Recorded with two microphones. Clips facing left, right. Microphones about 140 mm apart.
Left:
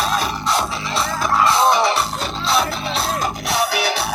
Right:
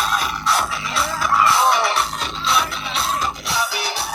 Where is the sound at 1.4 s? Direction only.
20° left (ahead or behind).